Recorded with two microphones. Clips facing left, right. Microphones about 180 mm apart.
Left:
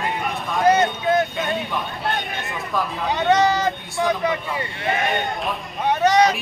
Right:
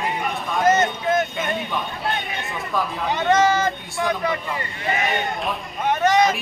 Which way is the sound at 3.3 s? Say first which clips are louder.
Even; 15° left (ahead or behind).